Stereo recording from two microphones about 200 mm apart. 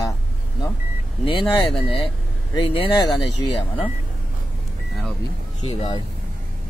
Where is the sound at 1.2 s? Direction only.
25° left (ahead or behind).